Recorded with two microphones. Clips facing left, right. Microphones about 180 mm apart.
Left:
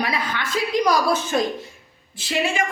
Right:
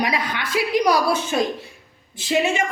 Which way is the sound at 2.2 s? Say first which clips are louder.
Right 3 dB; 20° right (ahead or behind).